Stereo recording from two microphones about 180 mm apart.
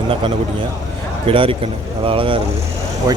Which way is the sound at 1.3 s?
30° right (ahead or behind).